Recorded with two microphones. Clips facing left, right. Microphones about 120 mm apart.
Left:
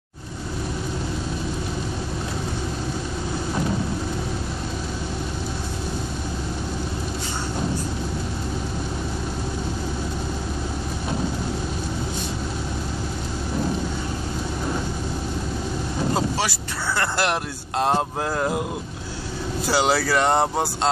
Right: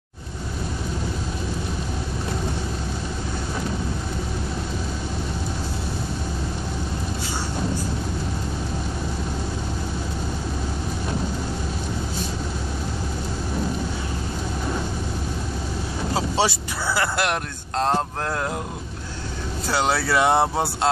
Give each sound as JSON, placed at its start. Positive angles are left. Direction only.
{"t": 16.9, "sound": "speech", "side_deg": 0}
{"t": 19.7, "sound": "speech", "side_deg": 0}